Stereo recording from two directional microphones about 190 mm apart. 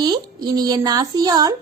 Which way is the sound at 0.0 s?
20° right (ahead or behind).